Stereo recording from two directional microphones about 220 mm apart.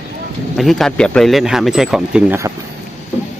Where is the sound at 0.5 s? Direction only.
Centre (ahead or behind).